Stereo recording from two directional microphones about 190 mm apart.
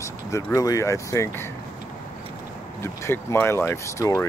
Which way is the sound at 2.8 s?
15° left (ahead or behind).